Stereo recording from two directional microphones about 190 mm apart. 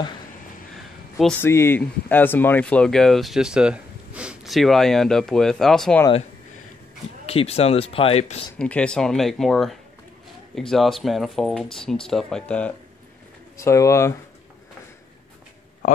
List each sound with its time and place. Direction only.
1.1 s speech: centre (ahead or behind)
1.5 s speech: 10° left (ahead or behind)
7.2 s speech: 30° left (ahead or behind)
8.5 s speech: 5° left (ahead or behind)